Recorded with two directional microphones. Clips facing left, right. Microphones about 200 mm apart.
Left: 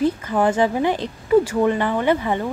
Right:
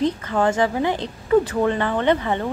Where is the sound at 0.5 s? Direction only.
20° right (ahead or behind).